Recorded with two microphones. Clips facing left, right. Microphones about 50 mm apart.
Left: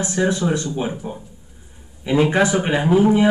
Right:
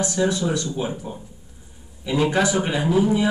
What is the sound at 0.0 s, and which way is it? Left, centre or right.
Speech, left.